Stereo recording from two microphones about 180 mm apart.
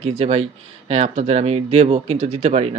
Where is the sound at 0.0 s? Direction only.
35° right (ahead or behind).